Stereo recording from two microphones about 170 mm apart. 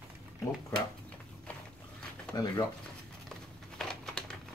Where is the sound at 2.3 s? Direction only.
20° left (ahead or behind).